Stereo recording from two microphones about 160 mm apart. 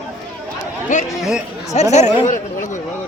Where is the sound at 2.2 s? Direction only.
50° left (ahead or behind).